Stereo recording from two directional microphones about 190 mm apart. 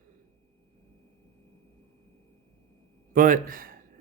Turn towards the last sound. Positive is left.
turn(degrees=-50)  # may be behind; listen again after turning